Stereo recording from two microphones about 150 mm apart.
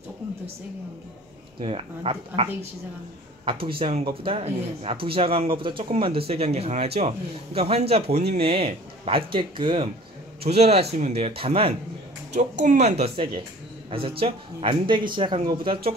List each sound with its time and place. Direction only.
1.6 s speech: 40° right (ahead or behind)
3.6 s a man's voice: 35° right (ahead or behind)
12.3 s a man's voice: 55° right (ahead or behind); by 15.9 s 35° right (ahead or behind)